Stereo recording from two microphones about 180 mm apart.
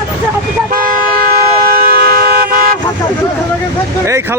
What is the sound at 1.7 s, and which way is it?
Vehicle, 60° right (ahead or behind).